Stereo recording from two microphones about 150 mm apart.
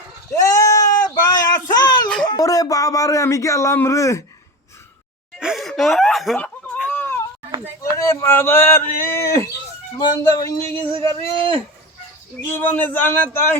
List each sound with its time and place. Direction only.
0.3 s a sound: 20° left (ahead or behind)
2.2 s speech: 25° left (ahead or behind)
5.4 s laughter: centre (ahead or behind)
6.8 s a sound: 15° left (ahead or behind)
7.9 s speech: 20° left (ahead or behind)
11.1 s speech: 35° right (ahead or behind)
12.5 s speech: 15° left (ahead or behind)